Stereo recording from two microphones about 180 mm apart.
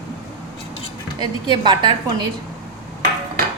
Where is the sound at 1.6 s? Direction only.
25° right (ahead or behind).